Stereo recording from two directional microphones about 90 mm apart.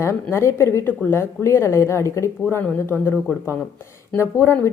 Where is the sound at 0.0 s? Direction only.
30° left (ahead or behind).